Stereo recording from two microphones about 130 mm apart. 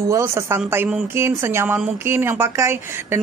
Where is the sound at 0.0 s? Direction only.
20° right (ahead or behind).